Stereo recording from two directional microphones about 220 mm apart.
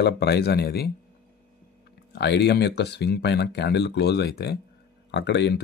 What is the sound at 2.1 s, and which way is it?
Speech, 50° left (ahead or behind).